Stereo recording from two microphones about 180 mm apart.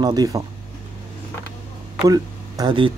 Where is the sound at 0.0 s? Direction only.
20° right (ahead or behind).